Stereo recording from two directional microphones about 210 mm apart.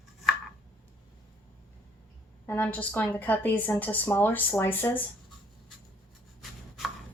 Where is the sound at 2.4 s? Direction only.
10° left (ahead or behind).